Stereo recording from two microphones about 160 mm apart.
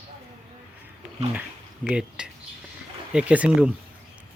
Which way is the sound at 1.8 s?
5° right (ahead or behind).